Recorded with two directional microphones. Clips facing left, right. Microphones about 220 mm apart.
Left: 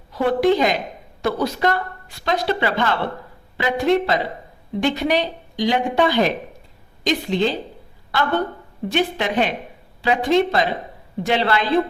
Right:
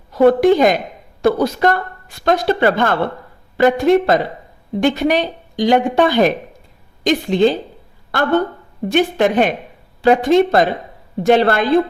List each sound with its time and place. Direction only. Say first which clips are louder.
0.1 s speech: right 6 dB; 45° right (ahead or behind)
8.9 s speech: right 7 dB; 50° right (ahead or behind)